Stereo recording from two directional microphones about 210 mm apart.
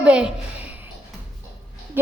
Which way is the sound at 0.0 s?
5° right (ahead or behind).